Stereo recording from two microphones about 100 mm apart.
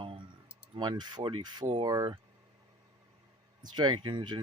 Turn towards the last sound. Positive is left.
turn(degrees=-50)  # may be behind; listen again after turning